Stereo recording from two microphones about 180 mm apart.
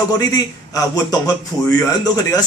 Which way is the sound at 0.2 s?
20° left (ahead or behind).